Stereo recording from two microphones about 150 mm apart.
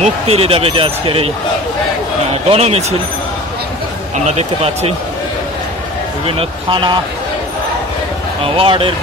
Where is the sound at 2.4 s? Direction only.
45° right (ahead or behind).